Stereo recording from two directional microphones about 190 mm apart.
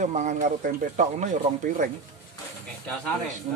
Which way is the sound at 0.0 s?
40° right (ahead or behind).